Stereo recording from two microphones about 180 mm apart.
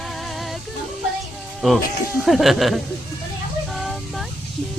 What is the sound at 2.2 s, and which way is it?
Speech, centre (ahead or behind).